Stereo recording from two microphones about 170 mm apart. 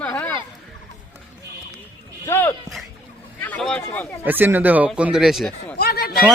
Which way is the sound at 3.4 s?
5° left (ahead or behind).